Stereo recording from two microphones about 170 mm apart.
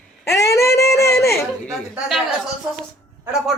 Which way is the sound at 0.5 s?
15° left (ahead or behind).